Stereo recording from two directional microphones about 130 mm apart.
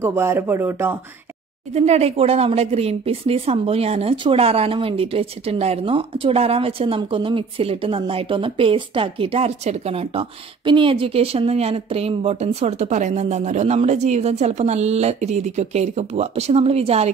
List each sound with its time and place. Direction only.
0.0 s speech: 20° right (ahead or behind)
1.7 s speech: 55° right (ahead or behind)